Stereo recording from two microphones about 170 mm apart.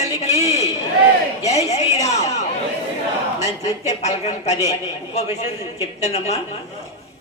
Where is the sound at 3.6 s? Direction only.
40° left (ahead or behind).